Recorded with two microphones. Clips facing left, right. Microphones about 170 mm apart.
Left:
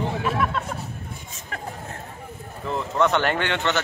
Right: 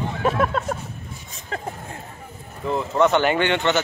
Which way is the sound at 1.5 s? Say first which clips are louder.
Right 4 dB; 30° right (ahead or behind).